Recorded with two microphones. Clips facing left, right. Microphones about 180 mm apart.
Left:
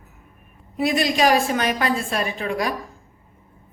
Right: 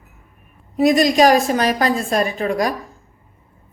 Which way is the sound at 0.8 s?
40° right (ahead or behind).